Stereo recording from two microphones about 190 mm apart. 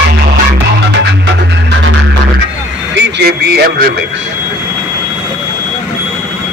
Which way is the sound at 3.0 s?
60° right (ahead or behind).